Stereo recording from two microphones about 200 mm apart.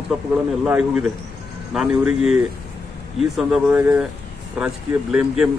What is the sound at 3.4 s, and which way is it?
Speech, 5° right (ahead or behind).